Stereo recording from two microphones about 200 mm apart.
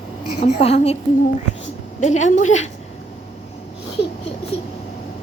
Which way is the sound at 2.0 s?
35° left (ahead or behind).